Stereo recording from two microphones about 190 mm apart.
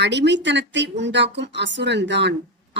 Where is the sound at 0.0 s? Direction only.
65° right (ahead or behind).